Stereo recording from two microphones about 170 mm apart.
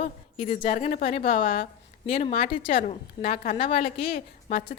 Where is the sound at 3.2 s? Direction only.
60° left (ahead or behind).